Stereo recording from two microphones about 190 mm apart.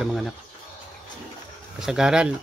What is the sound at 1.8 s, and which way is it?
Speech, 5° right (ahead or behind).